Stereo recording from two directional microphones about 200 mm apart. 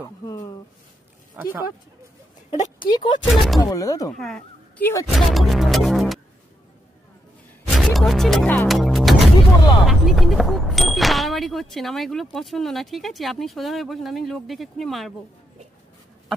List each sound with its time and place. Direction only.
1.3 s speech: 10° right (ahead or behind)
2.5 s speech: 35° left (ahead or behind)
3.3 s speech: centre (ahead or behind)
3.6 s speech: 15° left (ahead or behind)
4.2 s speech: 5° left (ahead or behind)
5.1 s music: centre (ahead or behind)
7.6 s music: centre (ahead or behind)
9.8 s speech: centre (ahead or behind)